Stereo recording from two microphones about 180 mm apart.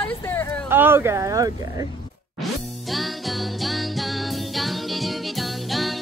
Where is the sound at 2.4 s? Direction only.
Centre (ahead or behind).